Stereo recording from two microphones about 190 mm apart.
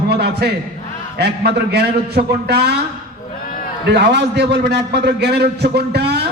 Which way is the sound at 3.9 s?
60° right (ahead or behind).